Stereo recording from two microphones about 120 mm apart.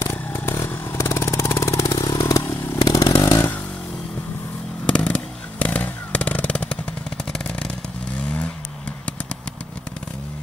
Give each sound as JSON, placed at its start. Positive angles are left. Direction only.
{"t": 0.0, "sound": "motorcycle", "side_deg": 20}
{"t": 2.8, "sound": "chainsaw", "side_deg": 30}
{"t": 4.8, "sound": "a sound", "side_deg": 10}
{"t": 7.3, "sound": "vehicle", "side_deg": 5}